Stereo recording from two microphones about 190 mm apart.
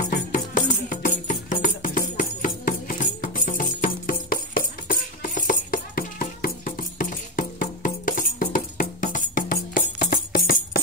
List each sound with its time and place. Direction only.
0.0 s music: 40° left (ahead or behind)